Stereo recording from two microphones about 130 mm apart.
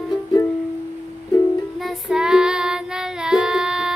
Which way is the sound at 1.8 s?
5° right (ahead or behind).